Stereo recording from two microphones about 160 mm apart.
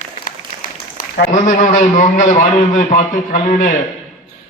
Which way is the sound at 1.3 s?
50° left (ahead or behind).